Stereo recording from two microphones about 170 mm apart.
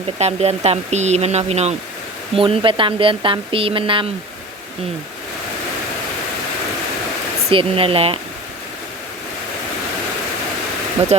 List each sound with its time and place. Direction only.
0.2 s speech: 40° right (ahead or behind)
7.5 s speech: 30° right (ahead or behind)
11.1 s speech: 35° right (ahead or behind)